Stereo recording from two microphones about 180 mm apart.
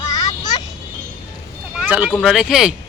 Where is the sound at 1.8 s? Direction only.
5° right (ahead or behind).